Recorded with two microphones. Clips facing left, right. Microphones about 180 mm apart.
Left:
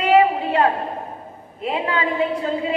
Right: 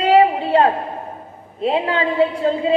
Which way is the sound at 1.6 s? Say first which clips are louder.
Right 5 dB; 30° right (ahead or behind).